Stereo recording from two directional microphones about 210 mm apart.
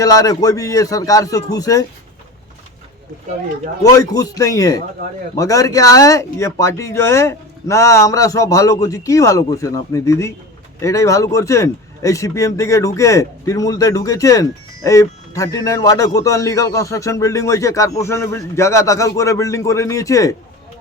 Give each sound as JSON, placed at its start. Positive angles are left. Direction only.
{"t": 0.0, "sound": "speech", "side_deg": 15}
{"t": 3.8, "sound": "speech", "side_deg": 20}